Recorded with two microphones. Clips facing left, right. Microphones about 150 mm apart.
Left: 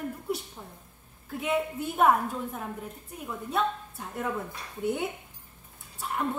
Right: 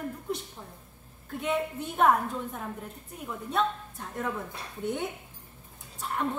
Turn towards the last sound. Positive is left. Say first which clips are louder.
# even
turn(degrees=5)  # may be behind; listen again after turning